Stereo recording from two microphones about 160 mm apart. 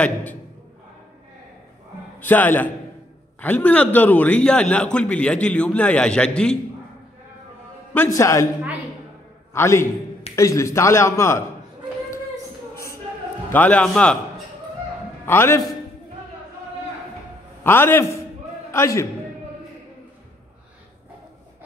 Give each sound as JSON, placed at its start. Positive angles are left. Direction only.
{"t": 0.0, "sound": "a man's voice", "side_deg": 10}
{"t": 2.1, "sound": "a man's voice", "side_deg": 10}
{"t": 7.9, "sound": "a man's voice", "side_deg": 15}
{"t": 9.5, "sound": "a man's voice", "side_deg": 20}
{"t": 12.7, "sound": "a sound", "side_deg": 20}
{"t": 13.5, "sound": "a man's voice", "side_deg": 10}
{"t": 15.2, "sound": "a man's voice", "side_deg": 15}
{"t": 17.6, "sound": "a man's voice", "side_deg": 15}